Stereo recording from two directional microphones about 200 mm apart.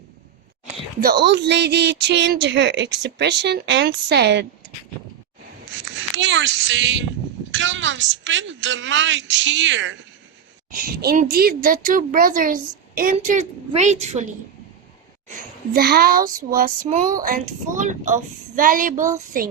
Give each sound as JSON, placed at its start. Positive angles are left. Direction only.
{"t": 1.0, "sound": "speech", "side_deg": -55}
{"t": 5.8, "sound": "a woman's voice", "side_deg": -65}
{"t": 10.7, "sound": "a woman's voice", "side_deg": -45}
{"t": 15.7, "sound": "a woman's voice", "side_deg": -50}